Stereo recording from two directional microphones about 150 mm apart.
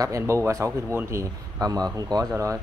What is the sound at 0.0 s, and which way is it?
A man's voice, 20° right (ahead or behind).